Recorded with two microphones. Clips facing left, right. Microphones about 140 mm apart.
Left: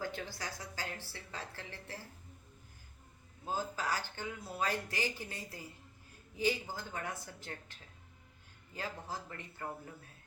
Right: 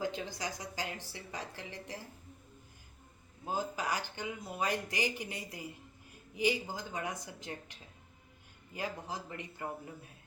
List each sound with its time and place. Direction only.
0.0 s speech: 15° right (ahead or behind)
3.4 s speech: 15° right (ahead or behind)